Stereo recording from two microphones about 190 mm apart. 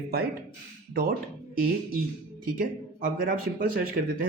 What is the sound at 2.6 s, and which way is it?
Speech, 45° right (ahead or behind).